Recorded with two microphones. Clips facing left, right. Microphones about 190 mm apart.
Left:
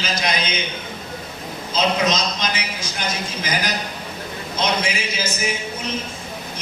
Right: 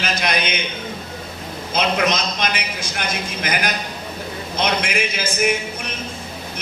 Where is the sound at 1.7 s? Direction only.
55° right (ahead or behind).